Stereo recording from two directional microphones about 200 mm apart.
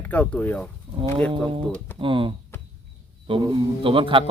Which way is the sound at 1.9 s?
25° right (ahead or behind).